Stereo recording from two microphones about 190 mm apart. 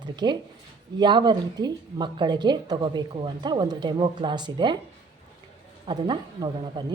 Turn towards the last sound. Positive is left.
turn(degrees=-25)  # may be behind; listen again after turning